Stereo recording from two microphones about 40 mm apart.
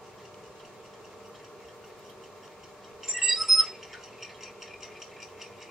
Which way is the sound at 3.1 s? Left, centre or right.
Centre.